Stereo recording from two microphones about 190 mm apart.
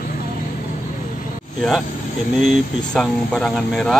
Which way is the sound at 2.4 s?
Centre (ahead or behind).